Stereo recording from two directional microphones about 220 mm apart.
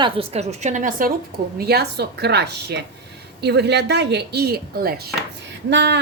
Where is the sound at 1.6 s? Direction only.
45° right (ahead or behind).